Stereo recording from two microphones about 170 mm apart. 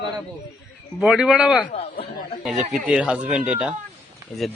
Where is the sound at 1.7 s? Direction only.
35° left (ahead or behind).